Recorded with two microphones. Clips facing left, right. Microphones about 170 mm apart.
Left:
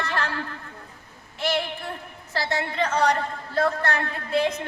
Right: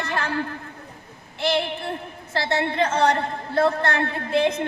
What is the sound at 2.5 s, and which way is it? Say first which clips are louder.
A woman's voice: right 3 dB; 30° right (ahead or behind).